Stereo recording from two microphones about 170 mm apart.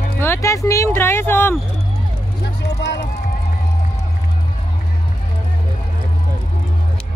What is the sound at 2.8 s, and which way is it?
Run, 75° left (ahead or behind).